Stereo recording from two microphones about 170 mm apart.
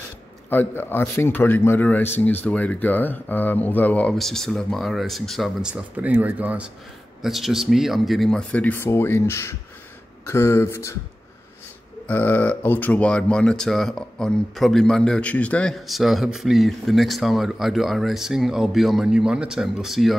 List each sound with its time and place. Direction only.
0.5 s a man's voice: 10° left (ahead or behind)
12.1 s speech: 10° left (ahead or behind)